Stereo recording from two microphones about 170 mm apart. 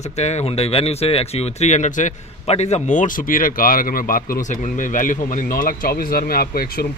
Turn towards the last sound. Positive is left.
turn(degrees=60)  # may be behind; listen again after turning